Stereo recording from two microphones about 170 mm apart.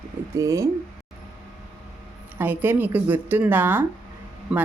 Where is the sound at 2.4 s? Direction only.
10° right (ahead or behind).